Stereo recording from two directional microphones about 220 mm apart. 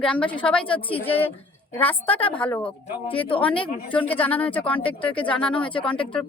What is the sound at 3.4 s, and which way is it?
A woman's voice, 5° left (ahead or behind).